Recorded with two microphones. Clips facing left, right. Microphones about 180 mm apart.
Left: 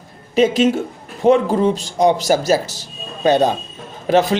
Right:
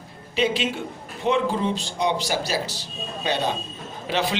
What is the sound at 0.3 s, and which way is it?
Speech, 45° left (ahead or behind).